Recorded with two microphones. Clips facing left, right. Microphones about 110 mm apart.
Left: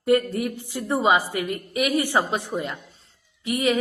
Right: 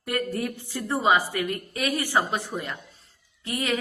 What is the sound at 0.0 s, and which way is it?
A woman's voice, 25° left (ahead or behind).